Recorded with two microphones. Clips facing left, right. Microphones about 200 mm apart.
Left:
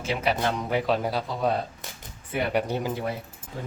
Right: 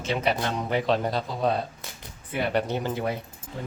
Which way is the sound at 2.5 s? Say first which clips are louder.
Even; 10° left (ahead or behind).